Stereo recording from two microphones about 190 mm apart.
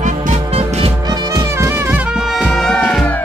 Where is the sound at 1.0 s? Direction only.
20° right (ahead or behind).